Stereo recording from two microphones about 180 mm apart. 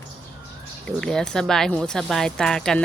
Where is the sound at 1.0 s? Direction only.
5° left (ahead or behind).